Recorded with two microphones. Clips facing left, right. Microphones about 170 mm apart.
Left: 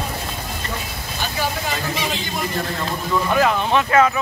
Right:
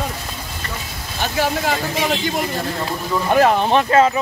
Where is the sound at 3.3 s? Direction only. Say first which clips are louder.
Right 5 dB; 35° right (ahead or behind).